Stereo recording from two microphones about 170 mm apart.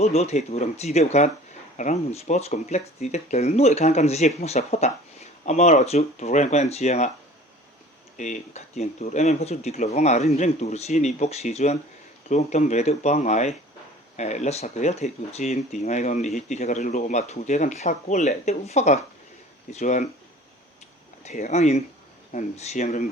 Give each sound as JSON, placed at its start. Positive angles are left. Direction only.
{"t": 0.0, "sound": "speech", "side_deg": 40}
{"t": 8.2, "sound": "speech", "side_deg": 40}
{"t": 21.3, "sound": "speech", "side_deg": 45}